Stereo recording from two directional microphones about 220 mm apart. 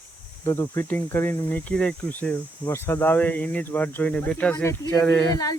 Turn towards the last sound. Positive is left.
turn(degrees=15)  # may be behind; listen again after turning